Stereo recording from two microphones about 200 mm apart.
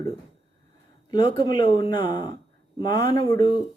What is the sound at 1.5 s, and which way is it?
Speech, 20° left (ahead or behind).